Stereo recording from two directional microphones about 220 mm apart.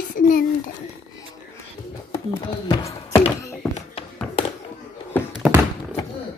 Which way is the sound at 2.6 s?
20° left (ahead or behind).